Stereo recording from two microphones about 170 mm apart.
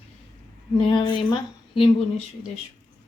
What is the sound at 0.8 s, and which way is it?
Speech, 30° left (ahead or behind).